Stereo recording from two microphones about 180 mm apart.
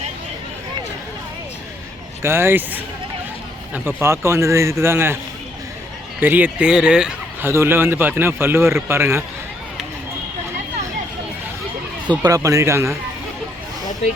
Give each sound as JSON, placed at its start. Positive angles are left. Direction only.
{"t": 2.2, "sound": "speech", "side_deg": -15}
{"t": 3.8, "sound": "speech", "side_deg": -15}
{"t": 6.1, "sound": "speech", "side_deg": -10}
{"t": 12.2, "sound": "speech", "side_deg": -20}